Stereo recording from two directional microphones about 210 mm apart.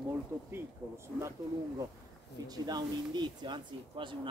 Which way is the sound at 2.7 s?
20° right (ahead or behind).